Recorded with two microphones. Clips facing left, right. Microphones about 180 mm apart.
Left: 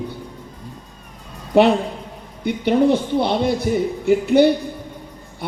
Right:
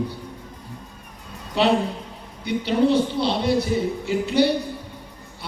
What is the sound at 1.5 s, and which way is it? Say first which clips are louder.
Speech: left 5 dB; 50° left (ahead or behind).